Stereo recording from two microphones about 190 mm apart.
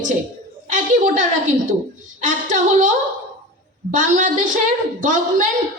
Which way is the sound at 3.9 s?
45° right (ahead or behind).